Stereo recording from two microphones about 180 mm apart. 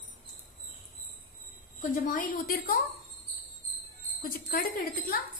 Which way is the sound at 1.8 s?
50° left (ahead or behind).